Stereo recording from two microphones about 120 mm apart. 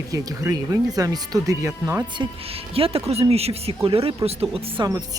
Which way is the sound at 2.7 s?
50° right (ahead or behind).